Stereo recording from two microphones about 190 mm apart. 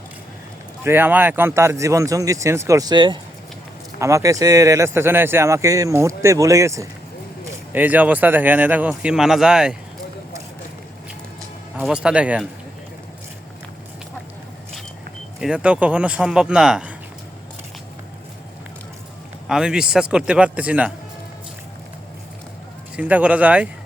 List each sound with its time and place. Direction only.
0.9 s speech: 10° right (ahead or behind)
11.8 s speech: 5° right (ahead or behind)
15.4 s speech: 5° right (ahead or behind)
19.5 s speech: 5° right (ahead or behind)
23.0 s speech: 5° right (ahead or behind)